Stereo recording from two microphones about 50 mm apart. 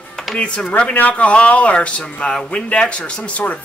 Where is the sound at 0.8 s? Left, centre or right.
Left.